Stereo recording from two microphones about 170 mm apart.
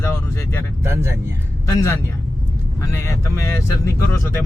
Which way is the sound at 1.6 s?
15° left (ahead or behind).